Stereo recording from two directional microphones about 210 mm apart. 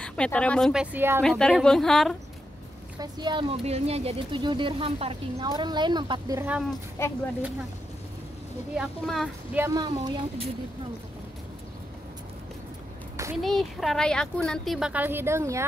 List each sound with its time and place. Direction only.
0.0 s speech: 5° left (ahead or behind)
0.9 s speech: 10° right (ahead or behind)
1.2 s speech: centre (ahead or behind)
3.0 s speech: 20° right (ahead or behind)
7.0 s speech: 10° left (ahead or behind)
8.7 s speech: centre (ahead or behind); by 10.4 s 25° right (ahead or behind)
13.4 s speech: centre (ahead or behind)